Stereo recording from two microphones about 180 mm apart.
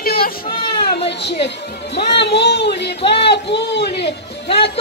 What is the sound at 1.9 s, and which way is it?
Speech, 70° left (ahead or behind).